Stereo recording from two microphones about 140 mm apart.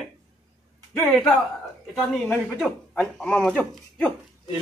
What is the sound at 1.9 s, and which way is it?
Speech, 5° left (ahead or behind).